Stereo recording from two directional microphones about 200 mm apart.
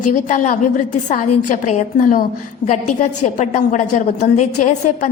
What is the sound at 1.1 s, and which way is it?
A woman's voice, 40° left (ahead or behind).